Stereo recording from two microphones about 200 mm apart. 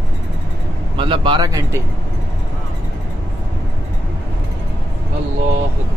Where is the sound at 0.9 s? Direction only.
25° right (ahead or behind).